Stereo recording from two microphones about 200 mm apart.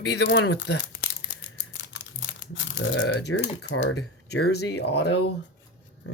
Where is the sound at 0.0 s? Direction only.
60° left (ahead or behind).